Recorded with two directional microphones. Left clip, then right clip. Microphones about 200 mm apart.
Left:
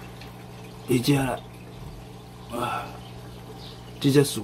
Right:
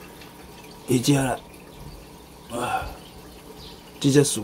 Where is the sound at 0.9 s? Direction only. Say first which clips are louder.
Right 2 dB; 15° right (ahead or behind).